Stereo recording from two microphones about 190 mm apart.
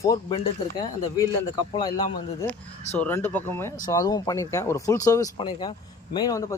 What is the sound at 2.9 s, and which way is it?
Speech, 10° left (ahead or behind).